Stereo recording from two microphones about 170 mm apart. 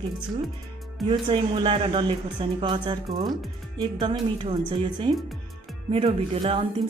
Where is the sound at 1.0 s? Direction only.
30° right (ahead or behind).